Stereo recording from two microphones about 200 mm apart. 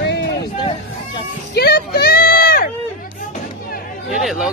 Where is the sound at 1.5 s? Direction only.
55° left (ahead or behind).